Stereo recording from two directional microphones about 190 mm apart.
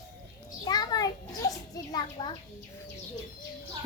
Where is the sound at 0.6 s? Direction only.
20° left (ahead or behind).